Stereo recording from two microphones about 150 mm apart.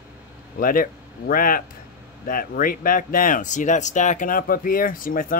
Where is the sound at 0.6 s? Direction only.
70° left (ahead or behind).